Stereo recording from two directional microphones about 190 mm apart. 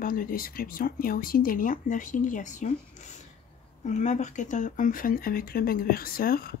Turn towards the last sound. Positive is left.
turn(degrees=50)  # may be behind; listen again after turning